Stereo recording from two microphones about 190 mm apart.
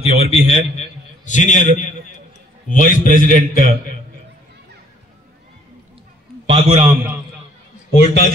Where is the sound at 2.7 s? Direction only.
45° left (ahead or behind).